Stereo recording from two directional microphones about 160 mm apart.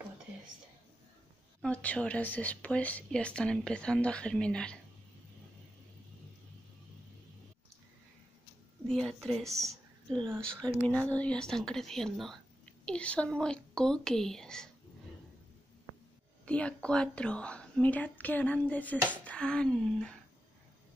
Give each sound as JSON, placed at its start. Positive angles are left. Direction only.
{"t": 1.6, "sound": "speech", "side_deg": 10}
{"t": 8.8, "sound": "a woman's voice", "side_deg": 5}
{"t": 9.5, "sound": "speech", "side_deg": -20}
{"t": 10.1, "sound": "a woman's voice", "side_deg": 5}
{"t": 16.4, "sound": "a woman's voice", "side_deg": 5}